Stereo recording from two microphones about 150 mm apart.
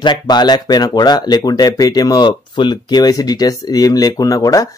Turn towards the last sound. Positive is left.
turn(degrees=25)  # may be behind; listen again after turning